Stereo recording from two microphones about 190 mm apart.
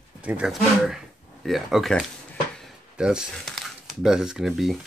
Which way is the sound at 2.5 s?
Centre (ahead or behind).